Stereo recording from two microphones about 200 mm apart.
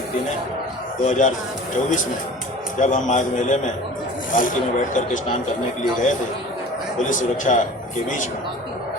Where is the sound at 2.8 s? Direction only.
40° left (ahead or behind).